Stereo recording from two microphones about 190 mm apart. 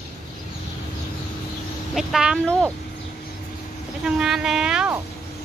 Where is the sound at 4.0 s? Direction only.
5° right (ahead or behind).